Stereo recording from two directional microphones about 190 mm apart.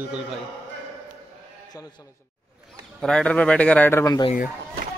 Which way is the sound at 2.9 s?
5° left (ahead or behind).